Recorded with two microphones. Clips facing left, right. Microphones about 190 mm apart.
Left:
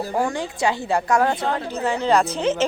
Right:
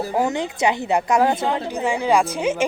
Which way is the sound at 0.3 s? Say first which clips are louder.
Right 2 dB; 20° right (ahead or behind).